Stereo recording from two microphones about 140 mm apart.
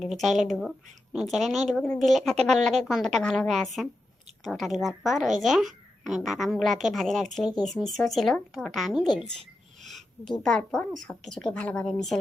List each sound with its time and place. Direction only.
0.0 s a woman's voice: centre (ahead or behind)
9.4 s a sound: 55° right (ahead or behind)
10.4 s a woman's voice: 5° left (ahead or behind)